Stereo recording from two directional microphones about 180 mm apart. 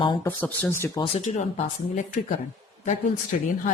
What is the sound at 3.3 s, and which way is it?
Speech, 45° left (ahead or behind).